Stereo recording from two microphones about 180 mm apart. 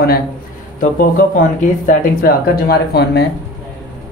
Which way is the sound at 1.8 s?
55° left (ahead or behind).